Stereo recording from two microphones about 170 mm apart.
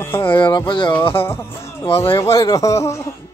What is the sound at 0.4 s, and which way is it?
Speech, 25° left (ahead or behind).